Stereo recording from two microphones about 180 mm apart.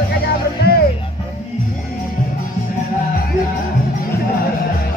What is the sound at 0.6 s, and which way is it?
Music, 60° left (ahead or behind).